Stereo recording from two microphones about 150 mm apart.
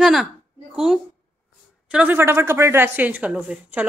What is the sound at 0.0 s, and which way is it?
Speech, centre (ahead or behind).